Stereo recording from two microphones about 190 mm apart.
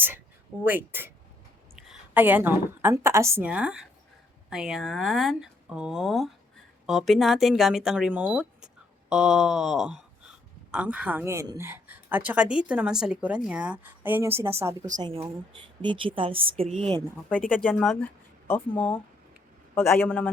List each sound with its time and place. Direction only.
0.6 s a woman's voice: 10° right (ahead or behind); by 17.0 s 30° right (ahead or behind)
17.5 s speech: 5° left (ahead or behind)